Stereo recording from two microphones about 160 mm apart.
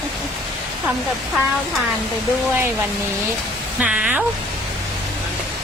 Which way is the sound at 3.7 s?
5° right (ahead or behind).